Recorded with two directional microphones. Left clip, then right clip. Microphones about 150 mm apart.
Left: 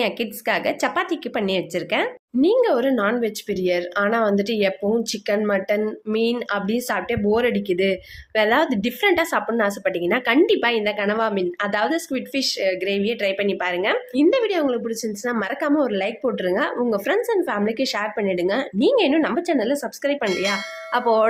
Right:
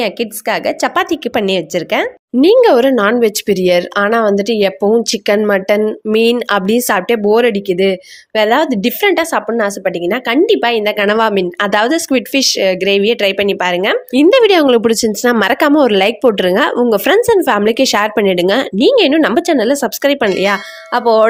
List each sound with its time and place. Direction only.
0.0 s a woman's voice: 45° right (ahead or behind)
10.9 s speech: 55° right (ahead or behind)
20.2 s speech: centre (ahead or behind)